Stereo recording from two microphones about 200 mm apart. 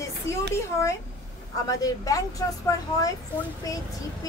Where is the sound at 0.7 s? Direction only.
15° left (ahead or behind).